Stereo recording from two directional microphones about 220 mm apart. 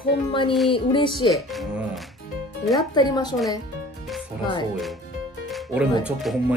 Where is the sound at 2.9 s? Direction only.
20° left (ahead or behind).